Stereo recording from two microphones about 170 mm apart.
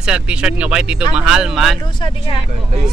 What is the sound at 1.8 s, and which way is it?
Speech, 30° left (ahead or behind).